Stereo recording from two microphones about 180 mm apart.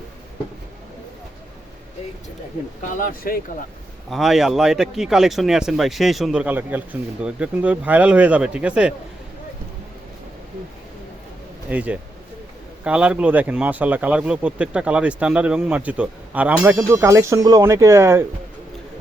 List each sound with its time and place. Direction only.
2.9 s speech: 55° left (ahead or behind)
4.1 s speech: centre (ahead or behind)
11.7 s speech: 10° right (ahead or behind)